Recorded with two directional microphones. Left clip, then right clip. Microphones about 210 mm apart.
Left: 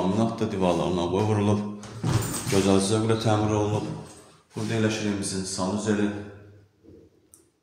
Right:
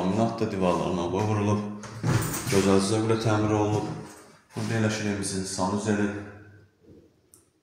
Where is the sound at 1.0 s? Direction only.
25° left (ahead or behind).